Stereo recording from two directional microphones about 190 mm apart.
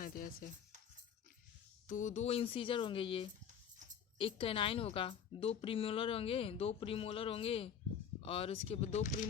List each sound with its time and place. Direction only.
0.0 s music: 50° left (ahead or behind)
1.9 s a woman's voice: 40° left (ahead or behind)